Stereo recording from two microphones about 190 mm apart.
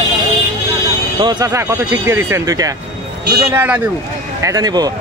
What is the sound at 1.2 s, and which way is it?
Speech, 20° right (ahead or behind).